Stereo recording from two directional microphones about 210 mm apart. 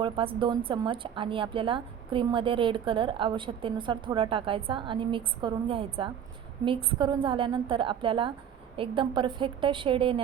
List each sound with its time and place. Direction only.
0.0 s a woman's voice: 25° right (ahead or behind)